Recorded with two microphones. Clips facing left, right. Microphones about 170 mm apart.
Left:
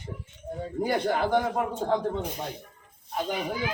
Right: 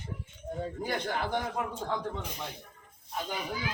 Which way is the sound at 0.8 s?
30° left (ahead or behind).